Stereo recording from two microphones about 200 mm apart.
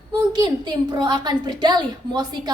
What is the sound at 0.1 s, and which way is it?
A woman's voice, 20° right (ahead or behind).